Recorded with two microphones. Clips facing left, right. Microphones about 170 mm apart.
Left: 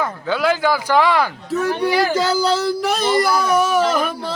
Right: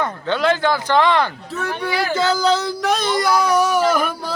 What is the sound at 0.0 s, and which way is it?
Speech, 5° left (ahead or behind).